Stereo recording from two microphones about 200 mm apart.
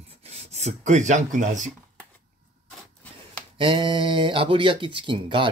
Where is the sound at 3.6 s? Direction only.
25° right (ahead or behind).